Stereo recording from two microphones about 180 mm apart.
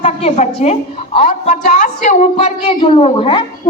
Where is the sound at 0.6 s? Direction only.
40° left (ahead or behind).